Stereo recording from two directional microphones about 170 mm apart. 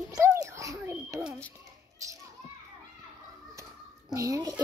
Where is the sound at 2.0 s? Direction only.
20° right (ahead or behind).